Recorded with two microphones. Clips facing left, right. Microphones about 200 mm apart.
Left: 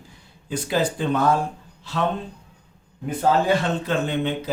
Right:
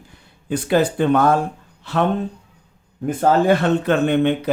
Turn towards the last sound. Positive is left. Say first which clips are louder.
# right 7 dB
turn(degrees=-60)  # may be behind; listen again after turning